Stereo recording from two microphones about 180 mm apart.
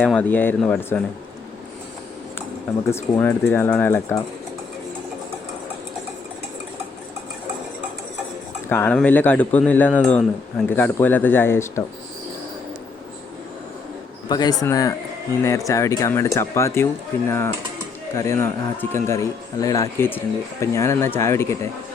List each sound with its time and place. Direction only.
0.0 s speech: 5° left (ahead or behind)
2.9 s speech: 10° left (ahead or behind)
8.7 s speech: 5° left (ahead or behind)
14.3 s speech: 20° left (ahead or behind)